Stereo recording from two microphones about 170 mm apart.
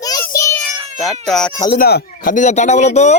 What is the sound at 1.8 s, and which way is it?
Speech, 65° left (ahead or behind).